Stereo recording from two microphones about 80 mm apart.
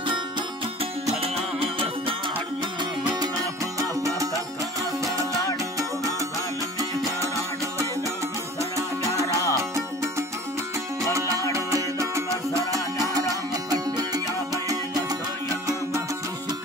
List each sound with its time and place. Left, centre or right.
9.2 s music: left
11.1 s music: right
13.7 s music: right